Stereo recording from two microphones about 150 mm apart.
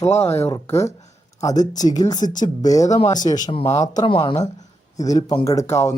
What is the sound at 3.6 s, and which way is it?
Speech, 20° left (ahead or behind).